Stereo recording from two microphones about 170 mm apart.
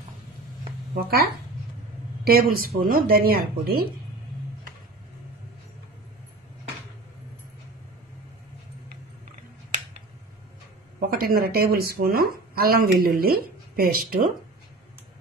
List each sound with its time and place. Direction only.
2.2 s speech: 60° right (ahead or behind)
11.0 s speech: 60° right (ahead or behind)